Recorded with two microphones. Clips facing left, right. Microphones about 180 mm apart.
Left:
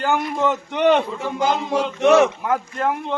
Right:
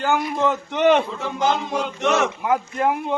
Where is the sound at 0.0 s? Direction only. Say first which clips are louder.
Even; centre (ahead or behind).